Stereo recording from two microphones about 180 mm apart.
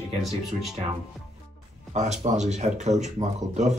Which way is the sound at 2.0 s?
40° right (ahead or behind).